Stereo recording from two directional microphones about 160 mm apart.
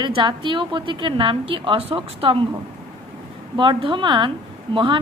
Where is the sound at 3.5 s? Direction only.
30° right (ahead or behind).